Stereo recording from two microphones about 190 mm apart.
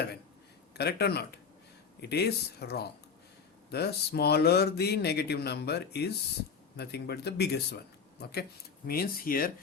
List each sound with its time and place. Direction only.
0.7 s speech: 60° left (ahead or behind)